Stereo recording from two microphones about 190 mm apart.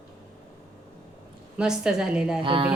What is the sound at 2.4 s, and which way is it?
Speech, 25° right (ahead or behind).